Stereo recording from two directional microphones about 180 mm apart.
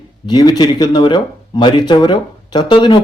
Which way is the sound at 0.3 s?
20° left (ahead or behind).